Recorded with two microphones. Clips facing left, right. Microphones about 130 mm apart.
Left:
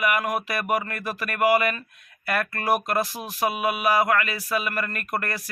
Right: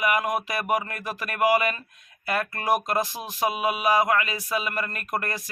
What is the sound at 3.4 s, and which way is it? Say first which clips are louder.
A man's voice: left 1 dB; 20° right (ahead or behind).